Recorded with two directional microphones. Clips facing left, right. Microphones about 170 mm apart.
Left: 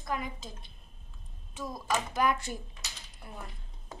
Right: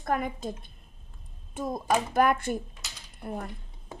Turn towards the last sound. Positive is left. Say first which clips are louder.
# right 10 dB
turn(degrees=-50)  # may be behind; listen again after turning